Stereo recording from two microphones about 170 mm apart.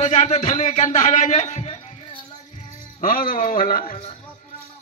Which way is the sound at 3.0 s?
55° left (ahead or behind).